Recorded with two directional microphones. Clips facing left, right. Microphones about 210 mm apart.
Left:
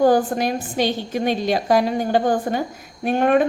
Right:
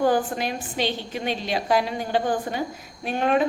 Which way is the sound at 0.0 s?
40° left (ahead or behind).